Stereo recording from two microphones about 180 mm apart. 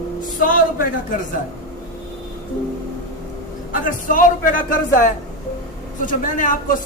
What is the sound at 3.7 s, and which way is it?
A man's voice, 50° left (ahead or behind).